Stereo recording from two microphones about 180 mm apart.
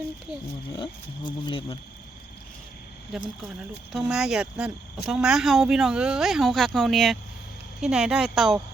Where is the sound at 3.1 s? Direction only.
Centre (ahead or behind).